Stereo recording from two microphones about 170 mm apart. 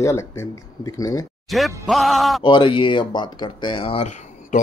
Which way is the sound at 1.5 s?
Centre (ahead or behind).